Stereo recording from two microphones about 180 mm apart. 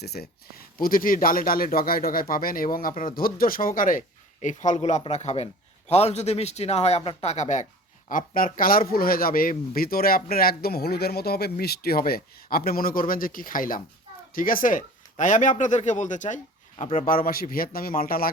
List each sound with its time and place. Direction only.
0.0 s a man's voice: 60° left (ahead or behind)